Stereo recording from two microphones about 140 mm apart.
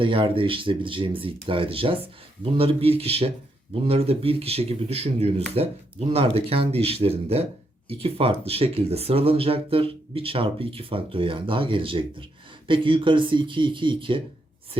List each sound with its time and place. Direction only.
0.0 s speech: 40° right (ahead or behind)